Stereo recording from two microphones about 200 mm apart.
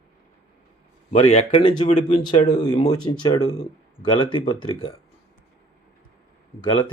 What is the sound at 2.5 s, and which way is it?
Speech, 20° left (ahead or behind).